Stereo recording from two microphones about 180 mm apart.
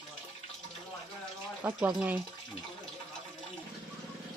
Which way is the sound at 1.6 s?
10° right (ahead or behind).